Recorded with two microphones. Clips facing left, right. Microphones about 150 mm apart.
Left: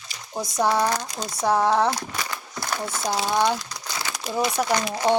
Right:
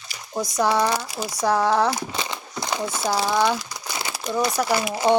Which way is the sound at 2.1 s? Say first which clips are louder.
Right 2 dB; 20° right (ahead or behind).